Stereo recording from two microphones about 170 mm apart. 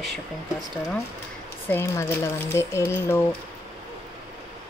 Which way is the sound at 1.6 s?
15° left (ahead or behind).